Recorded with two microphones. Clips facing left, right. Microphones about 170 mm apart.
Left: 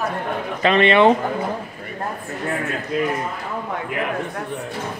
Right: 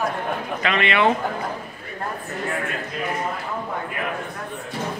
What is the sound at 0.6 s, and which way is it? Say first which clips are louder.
Speech: left 8 dB; 30° left (ahead or behind).